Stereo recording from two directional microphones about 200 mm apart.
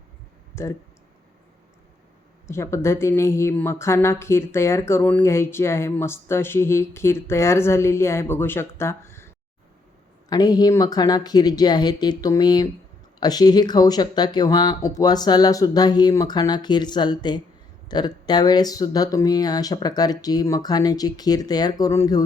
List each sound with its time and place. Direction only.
0.5 s speech: 15° left (ahead or behind)
2.5 s a woman's voice: 15° left (ahead or behind)